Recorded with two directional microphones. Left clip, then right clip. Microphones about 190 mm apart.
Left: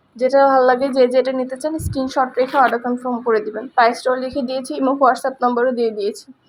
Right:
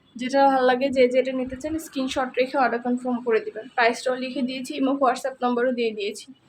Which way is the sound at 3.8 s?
15° left (ahead or behind).